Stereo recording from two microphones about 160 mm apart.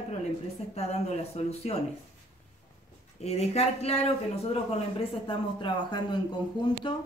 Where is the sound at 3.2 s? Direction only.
40° left (ahead or behind).